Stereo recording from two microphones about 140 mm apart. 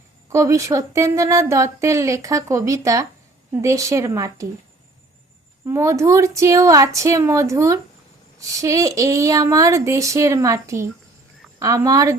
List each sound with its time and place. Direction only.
0.3 s speech: 20° right (ahead or behind)
5.6 s speech: 20° right (ahead or behind)